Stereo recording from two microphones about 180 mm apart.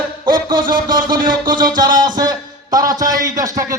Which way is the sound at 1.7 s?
25° right (ahead or behind).